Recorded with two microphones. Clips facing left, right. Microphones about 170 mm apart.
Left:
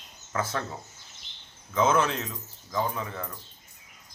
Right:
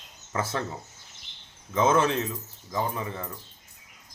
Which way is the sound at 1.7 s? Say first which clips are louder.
Right 1 dB; 25° right (ahead or behind).